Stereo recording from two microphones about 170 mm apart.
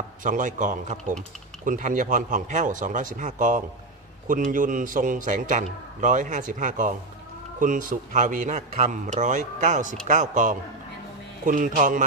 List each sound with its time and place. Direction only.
0.2 s a man's voice: 50° right (ahead or behind)